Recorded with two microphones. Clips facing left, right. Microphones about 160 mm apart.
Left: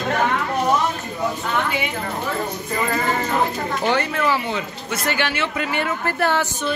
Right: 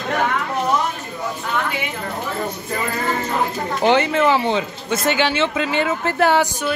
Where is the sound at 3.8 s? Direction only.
20° right (ahead or behind).